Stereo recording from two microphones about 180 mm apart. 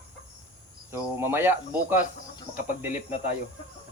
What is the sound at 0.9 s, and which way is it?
Speech, 15° right (ahead or behind).